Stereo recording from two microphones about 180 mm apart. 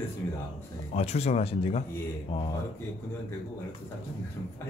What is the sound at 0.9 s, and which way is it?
Speech, 35° left (ahead or behind).